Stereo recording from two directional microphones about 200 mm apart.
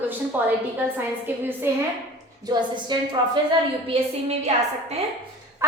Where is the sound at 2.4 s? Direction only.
20° right (ahead or behind).